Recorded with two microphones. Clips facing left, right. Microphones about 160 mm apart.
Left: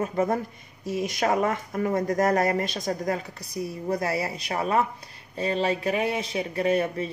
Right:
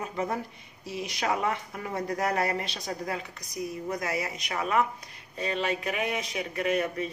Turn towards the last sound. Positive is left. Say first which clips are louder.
# left 4 dB
turn(degrees=30)  # may be behind; listen again after turning